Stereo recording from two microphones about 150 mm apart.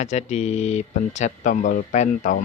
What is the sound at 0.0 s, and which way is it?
Speech, 50° left (ahead or behind).